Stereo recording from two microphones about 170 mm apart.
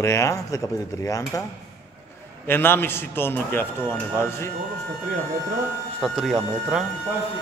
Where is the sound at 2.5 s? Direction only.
15° left (ahead or behind).